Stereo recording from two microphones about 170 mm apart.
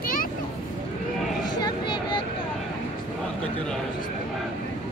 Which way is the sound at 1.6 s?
25° left (ahead or behind).